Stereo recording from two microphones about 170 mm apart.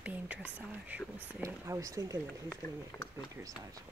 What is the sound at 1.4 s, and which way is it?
Speech, 20° right (ahead or behind).